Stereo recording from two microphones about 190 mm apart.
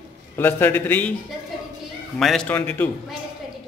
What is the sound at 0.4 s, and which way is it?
Speech, 10° left (ahead or behind).